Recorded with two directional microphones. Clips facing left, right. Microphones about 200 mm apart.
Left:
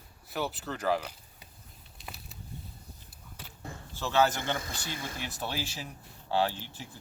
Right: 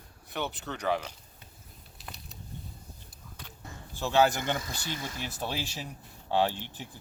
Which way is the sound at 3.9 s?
15° right (ahead or behind).